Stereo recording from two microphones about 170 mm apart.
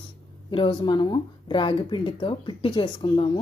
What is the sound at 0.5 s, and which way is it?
A woman's voice, 30° left (ahead or behind).